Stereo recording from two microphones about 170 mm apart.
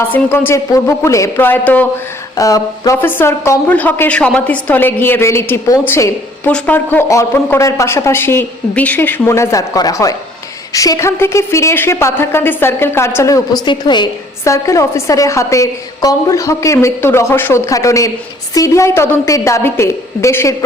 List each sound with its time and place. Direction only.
0.0 s a woman's voice: 15° left (ahead or behind)
2.3 s a woman's voice: 20° left (ahead or behind)